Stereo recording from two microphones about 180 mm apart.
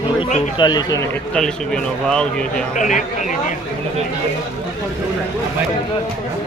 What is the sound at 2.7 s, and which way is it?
Speech, 45° left (ahead or behind).